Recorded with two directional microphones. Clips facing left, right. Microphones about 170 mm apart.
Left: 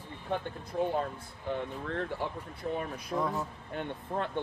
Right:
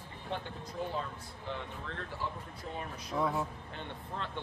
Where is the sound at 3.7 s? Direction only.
50° left (ahead or behind).